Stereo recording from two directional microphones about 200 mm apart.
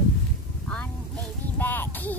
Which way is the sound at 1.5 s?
10° left (ahead or behind).